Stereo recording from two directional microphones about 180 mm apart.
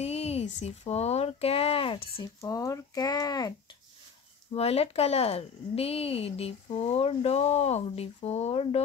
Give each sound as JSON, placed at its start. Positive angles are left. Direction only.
{"t": 0.0, "sound": "speech", "side_deg": 35}
{"t": 2.4, "sound": "speech", "side_deg": 15}
{"t": 4.6, "sound": "speech", "side_deg": 35}